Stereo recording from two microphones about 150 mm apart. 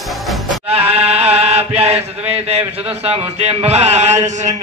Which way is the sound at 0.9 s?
45° right (ahead or behind).